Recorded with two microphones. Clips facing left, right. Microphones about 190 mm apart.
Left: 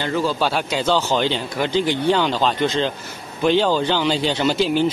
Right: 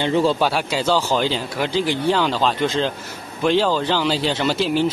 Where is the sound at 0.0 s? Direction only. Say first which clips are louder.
Right 4 dB; 25° right (ahead or behind).